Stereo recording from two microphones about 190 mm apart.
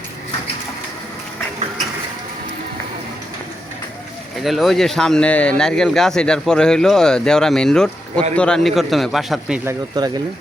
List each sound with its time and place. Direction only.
4.4 s speech: centre (ahead or behind)
9.6 s speech: 20° right (ahead or behind)